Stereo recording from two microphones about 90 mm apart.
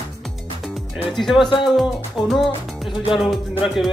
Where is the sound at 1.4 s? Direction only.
65° left (ahead or behind).